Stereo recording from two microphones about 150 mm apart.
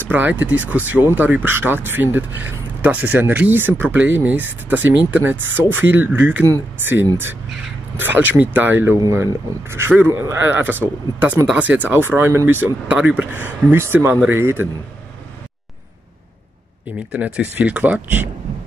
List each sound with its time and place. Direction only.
0.1 s speech: 10° right (ahead or behind)
17.1 s speech: 10° right (ahead or behind)